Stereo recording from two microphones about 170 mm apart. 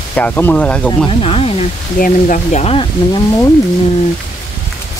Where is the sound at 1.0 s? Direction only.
35° left (ahead or behind).